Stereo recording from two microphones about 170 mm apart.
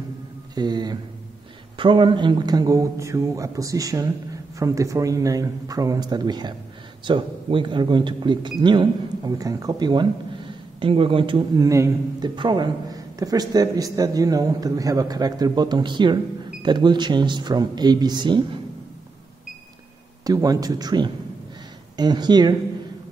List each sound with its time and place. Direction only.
0.6 s speech: 25° right (ahead or behind)
20.2 s speech: 20° right (ahead or behind)